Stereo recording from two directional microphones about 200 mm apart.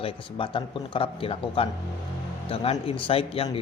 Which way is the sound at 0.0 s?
25° left (ahead or behind).